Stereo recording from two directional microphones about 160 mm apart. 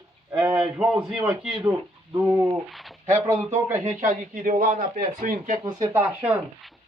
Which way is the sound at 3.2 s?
15° right (ahead or behind).